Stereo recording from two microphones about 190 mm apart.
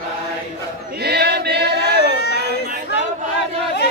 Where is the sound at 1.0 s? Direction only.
55° right (ahead or behind).